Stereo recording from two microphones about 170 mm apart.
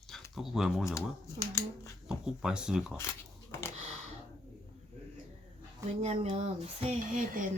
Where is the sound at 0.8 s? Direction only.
20° left (ahead or behind).